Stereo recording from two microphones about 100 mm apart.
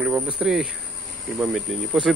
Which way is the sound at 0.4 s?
5° right (ahead or behind).